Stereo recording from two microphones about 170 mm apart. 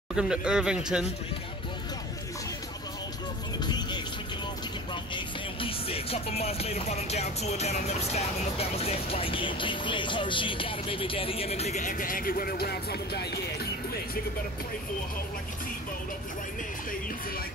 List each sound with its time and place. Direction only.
0.1 s speech: 5° right (ahead or behind)
3.5 s music: 25° left (ahead or behind)
5.1 s music: 30° left (ahead or behind); by 13.4 s 75° left (ahead or behind)